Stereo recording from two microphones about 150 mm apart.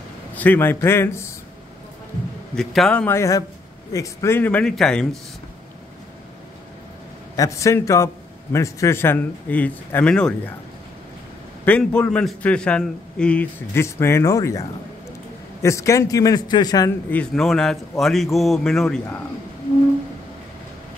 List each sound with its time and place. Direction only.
0.3 s a man's voice: 10° left (ahead or behind)
2.5 s a man's voice: centre (ahead or behind)
3.2 s a man's voice: 20° left (ahead or behind); by 5.2 s 5° left (ahead or behind)
7.3 s a man's voice: 20° left (ahead or behind)
11.6 s a man's voice: 10° left (ahead or behind); by 16.9 s 25° left (ahead or behind)
17.1 s a man's voice: 5° left (ahead or behind)